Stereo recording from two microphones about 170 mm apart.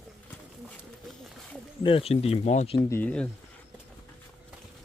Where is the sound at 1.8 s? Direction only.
35° left (ahead or behind).